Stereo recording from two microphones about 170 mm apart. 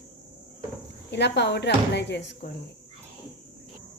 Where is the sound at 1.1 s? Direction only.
90° left.